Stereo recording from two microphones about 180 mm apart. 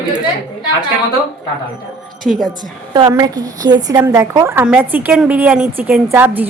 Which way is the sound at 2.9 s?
20° right (ahead or behind).